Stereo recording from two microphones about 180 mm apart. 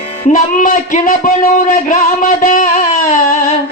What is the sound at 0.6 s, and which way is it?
Music, 45° left (ahead or behind).